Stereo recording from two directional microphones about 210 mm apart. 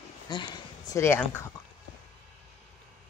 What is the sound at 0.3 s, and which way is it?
Speech, 20° left (ahead or behind).